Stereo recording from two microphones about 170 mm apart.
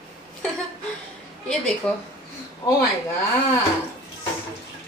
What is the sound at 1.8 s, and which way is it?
Speech, 10° left (ahead or behind).